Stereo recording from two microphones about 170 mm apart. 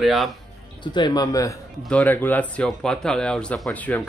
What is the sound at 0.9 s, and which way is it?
Speech, 25° left (ahead or behind).